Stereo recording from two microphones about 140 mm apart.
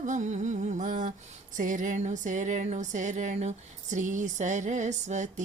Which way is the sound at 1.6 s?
65° right (ahead or behind).